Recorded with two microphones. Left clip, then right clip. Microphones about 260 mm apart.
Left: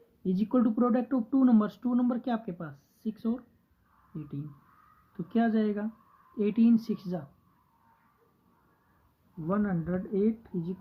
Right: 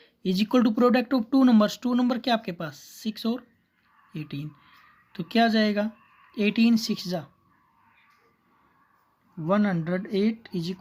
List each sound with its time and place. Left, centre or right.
0.2 s speech: right
5.1 s speech: right
9.5 s speech: right